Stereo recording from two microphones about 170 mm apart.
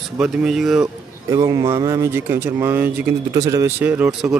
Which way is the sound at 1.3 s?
20° right (ahead or behind).